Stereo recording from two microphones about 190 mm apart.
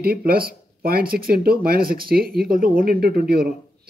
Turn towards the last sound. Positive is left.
turn(degrees=-50)  # may be behind; listen again after turning